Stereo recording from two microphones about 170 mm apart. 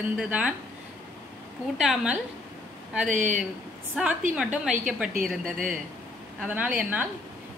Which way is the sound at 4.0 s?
10° right (ahead or behind).